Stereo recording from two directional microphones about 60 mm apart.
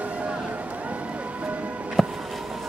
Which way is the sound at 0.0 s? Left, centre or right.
Right.